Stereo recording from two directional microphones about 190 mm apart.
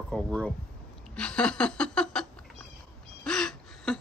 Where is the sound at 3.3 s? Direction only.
5° left (ahead or behind).